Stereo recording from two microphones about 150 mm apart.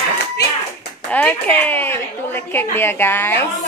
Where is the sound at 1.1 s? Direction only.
10° left (ahead or behind).